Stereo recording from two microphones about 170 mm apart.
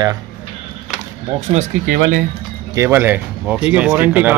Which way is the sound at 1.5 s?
45° right (ahead or behind).